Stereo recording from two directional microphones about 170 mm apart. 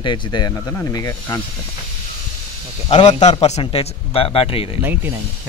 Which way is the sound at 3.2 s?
40° left (ahead or behind).